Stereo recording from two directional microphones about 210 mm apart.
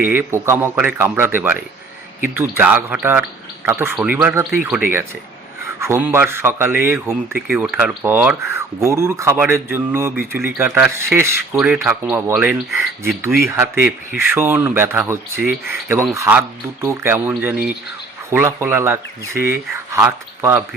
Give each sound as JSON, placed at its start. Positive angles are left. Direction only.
{"t": 0.0, "sound": "speech", "side_deg": -10}
{"t": 14.2, "sound": "speech", "side_deg": -10}